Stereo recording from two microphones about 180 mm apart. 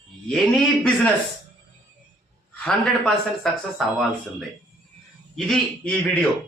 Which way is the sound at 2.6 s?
Centre (ahead or behind).